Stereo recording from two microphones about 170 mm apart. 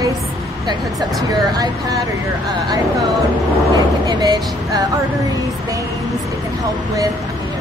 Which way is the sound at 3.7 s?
20° right (ahead or behind).